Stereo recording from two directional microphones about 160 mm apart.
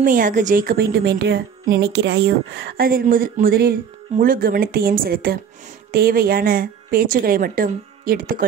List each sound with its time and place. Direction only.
0.0 s a woman's voice: 55° right (ahead or behind)